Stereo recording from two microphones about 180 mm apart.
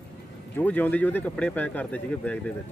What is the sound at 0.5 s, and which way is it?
Speech, 10° left (ahead or behind).